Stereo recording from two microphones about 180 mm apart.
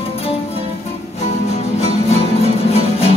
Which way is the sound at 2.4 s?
35° left (ahead or behind).